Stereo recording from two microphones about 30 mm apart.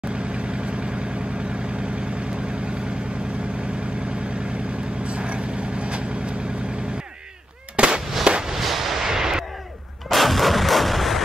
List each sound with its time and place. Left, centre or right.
0.1 s vehicle: right
5.0 s vehicle: right
7.7 s fireworks: right
8.5 s a sound: centre
10.0 s artillery fire: centre